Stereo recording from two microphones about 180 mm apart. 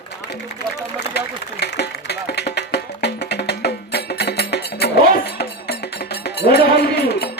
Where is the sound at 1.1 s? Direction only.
70° left (ahead or behind).